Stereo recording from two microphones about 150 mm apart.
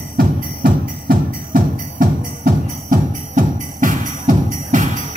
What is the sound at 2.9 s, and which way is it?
Music, 60° right (ahead or behind).